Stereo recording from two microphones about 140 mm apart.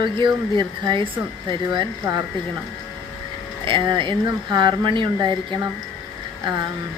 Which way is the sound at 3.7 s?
35° right (ahead or behind).